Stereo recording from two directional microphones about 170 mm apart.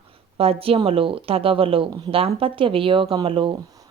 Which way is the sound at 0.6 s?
35° right (ahead or behind).